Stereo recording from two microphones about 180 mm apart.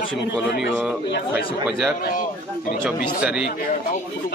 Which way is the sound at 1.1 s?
65° left (ahead or behind).